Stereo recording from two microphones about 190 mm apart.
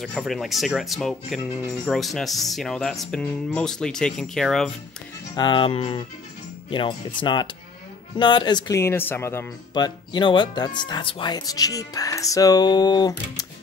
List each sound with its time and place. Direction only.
0.0 s speech: centre (ahead or behind)
5.3 s speech: 25° left (ahead or behind)